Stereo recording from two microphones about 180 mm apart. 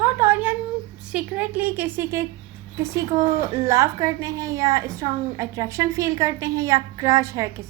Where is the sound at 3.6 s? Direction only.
15° right (ahead or behind).